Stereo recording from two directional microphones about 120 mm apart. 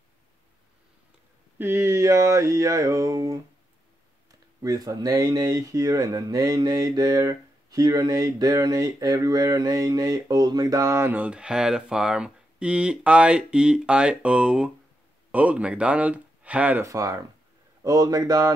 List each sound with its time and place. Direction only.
1.6 s speech: 20° right (ahead or behind)
4.6 s speech: 30° right (ahead or behind); by 16.8 s 10° right (ahead or behind)
16.8 s speech: 25° right (ahead or behind)